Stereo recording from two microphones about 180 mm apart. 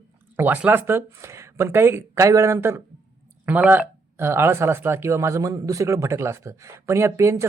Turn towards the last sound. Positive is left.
turn(degrees=-15)  # may be behind; listen again after turning